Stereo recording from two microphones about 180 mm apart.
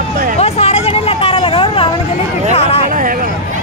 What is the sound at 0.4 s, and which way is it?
Vehicle, 35° left (ahead or behind).